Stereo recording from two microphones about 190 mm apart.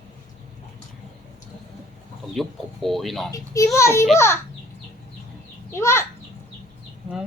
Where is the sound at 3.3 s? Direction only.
15° left (ahead or behind).